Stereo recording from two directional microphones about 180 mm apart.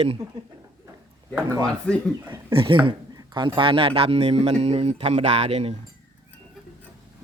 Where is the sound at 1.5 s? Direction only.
20° right (ahead or behind).